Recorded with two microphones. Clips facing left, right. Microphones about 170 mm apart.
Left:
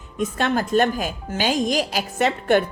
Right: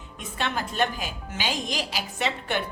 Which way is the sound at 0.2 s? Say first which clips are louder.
Left 8 dB; 45° left (ahead or behind).